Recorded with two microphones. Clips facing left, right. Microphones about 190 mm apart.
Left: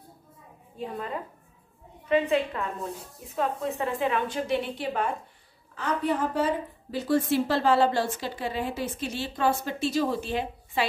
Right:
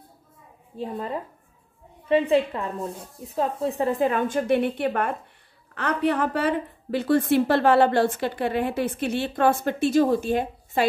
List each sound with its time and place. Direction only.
0.7 s a woman's voice: 35° right (ahead or behind)